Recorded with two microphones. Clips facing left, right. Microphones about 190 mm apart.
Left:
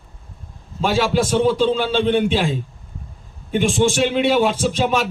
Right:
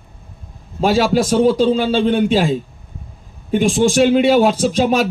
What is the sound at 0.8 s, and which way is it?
Speech, 40° right (ahead or behind).